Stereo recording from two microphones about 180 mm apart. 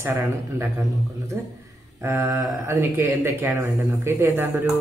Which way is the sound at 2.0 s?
15° right (ahead or behind).